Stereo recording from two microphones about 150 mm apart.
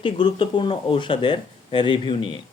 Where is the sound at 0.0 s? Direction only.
35° left (ahead or behind).